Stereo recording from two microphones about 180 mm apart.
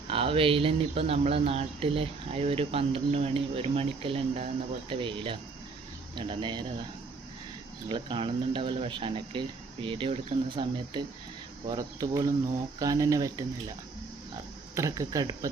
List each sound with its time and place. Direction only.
0.1 s speech: 30° right (ahead or behind)
7.9 s speech: 25° right (ahead or behind)
14.8 s speech: 20° right (ahead or behind)